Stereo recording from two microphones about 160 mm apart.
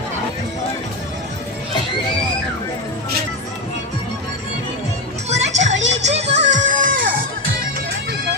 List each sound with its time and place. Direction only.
5.3 s music: 45° right (ahead or behind)